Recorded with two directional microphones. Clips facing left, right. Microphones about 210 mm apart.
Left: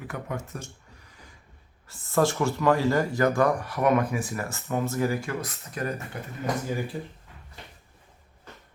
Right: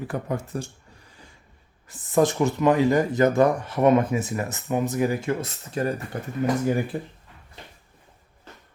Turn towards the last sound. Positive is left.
turn(degrees=-55)  # may be behind; listen again after turning